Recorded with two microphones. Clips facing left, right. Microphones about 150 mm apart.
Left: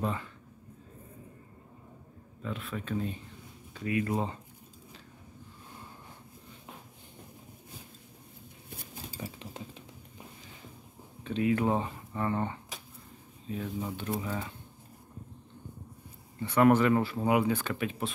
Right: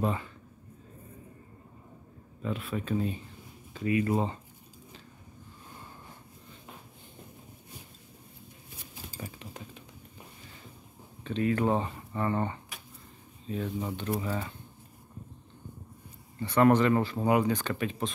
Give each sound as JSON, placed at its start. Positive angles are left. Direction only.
{"t": 0.0, "sound": "speech", "side_deg": -10}
{"t": 2.4, "sound": "speech", "side_deg": -10}
{"t": 9.4, "sound": "typing", "side_deg": 25}
{"t": 11.2, "sound": "speech", "side_deg": 10}
{"t": 16.3, "sound": "speech", "side_deg": 10}